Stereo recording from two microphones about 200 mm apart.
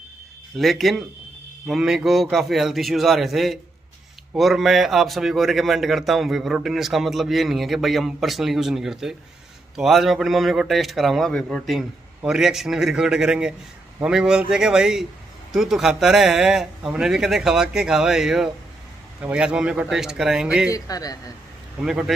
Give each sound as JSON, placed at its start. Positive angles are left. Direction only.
{"t": 0.6, "sound": "a man's voice", "side_deg": 0}
{"t": 20.7, "sound": "a man's voice", "side_deg": 20}
{"t": 21.8, "sound": "a man's voice", "side_deg": 0}